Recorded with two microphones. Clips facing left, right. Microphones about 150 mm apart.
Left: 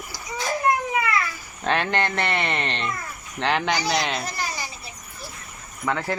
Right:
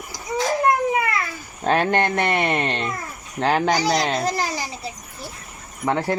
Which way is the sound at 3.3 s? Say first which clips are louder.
Right 4 dB; 40° right (ahead or behind).